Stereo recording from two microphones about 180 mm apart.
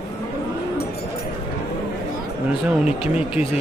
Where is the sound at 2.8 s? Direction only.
5° right (ahead or behind).